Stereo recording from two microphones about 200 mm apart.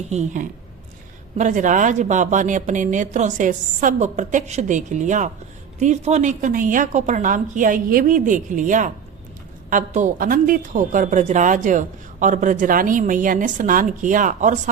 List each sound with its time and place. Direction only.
0.1 s a woman's voice: 35° right (ahead or behind)